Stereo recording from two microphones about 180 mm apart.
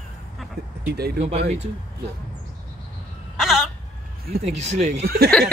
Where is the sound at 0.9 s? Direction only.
60° right (ahead or behind).